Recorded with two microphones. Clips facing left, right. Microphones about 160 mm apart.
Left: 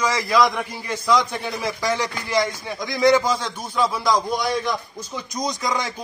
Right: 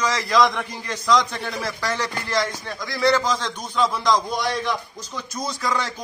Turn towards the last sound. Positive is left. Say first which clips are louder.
# left 1 dB
turn(degrees=15)  # may be behind; listen again after turning